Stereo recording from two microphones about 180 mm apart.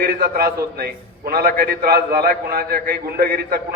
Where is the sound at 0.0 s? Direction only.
55° right (ahead or behind).